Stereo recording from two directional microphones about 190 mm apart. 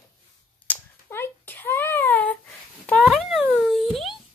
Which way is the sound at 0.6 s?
10° left (ahead or behind).